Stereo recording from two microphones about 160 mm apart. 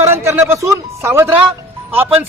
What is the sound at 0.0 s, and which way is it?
A man's voice, 15° right (ahead or behind).